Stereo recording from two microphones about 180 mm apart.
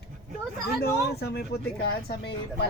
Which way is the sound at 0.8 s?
60° left (ahead or behind).